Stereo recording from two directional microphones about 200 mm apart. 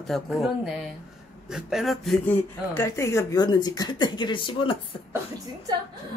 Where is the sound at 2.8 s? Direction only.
15° left (ahead or behind).